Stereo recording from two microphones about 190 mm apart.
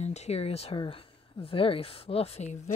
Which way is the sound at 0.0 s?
35° left (ahead or behind).